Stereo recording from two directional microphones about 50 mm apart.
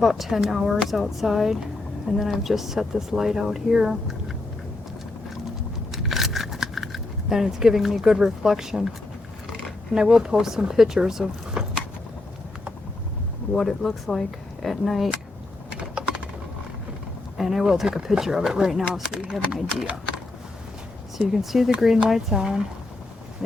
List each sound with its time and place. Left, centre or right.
0.0 s speech: centre
5.9 s a sound: centre
9.6 s speech: centre
13.6 s speech: centre
15.8 s typing: centre
17.3 s speech: centre
19.2 s speech: centre
21.2 s speech: centre